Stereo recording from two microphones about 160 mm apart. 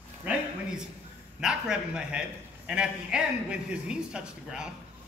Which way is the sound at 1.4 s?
5° right (ahead or behind).